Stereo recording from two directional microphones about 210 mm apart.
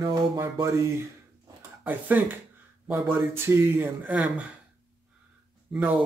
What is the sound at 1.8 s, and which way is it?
Speech, 10° right (ahead or behind).